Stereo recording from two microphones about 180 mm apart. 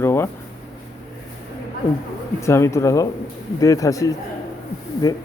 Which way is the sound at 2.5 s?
15° left (ahead or behind).